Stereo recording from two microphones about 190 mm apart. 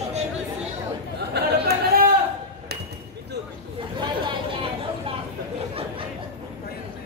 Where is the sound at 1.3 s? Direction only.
55° right (ahead or behind).